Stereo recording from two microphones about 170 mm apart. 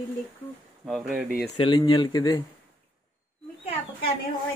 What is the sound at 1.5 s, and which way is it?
Speech, 30° left (ahead or behind).